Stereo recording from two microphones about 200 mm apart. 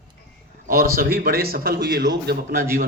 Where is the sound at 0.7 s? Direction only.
50° right (ahead or behind).